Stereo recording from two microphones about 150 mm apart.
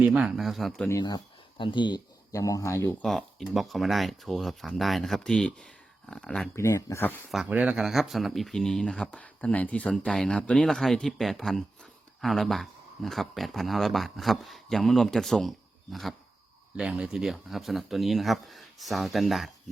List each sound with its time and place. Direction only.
0.0 s speech: 10° right (ahead or behind)
0.9 s speech: 25° left (ahead or behind)
3.0 s speech: 5° left (ahead or behind)
6.6 s speech: 20° left (ahead or behind)
7.3 s speech: 5° right (ahead or behind)